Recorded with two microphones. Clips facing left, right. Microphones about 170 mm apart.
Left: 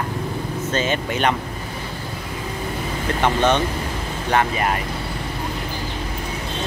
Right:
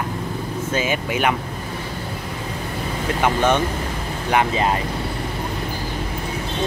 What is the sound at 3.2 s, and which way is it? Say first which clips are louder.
Speech: even; 10° right (ahead or behind).